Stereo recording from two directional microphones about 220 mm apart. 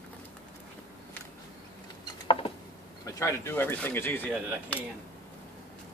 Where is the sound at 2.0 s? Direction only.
25° left (ahead or behind).